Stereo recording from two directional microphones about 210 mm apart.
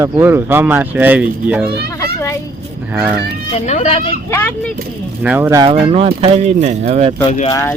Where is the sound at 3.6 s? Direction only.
35° left (ahead or behind).